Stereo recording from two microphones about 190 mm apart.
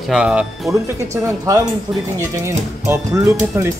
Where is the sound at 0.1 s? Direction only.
5° right (ahead or behind).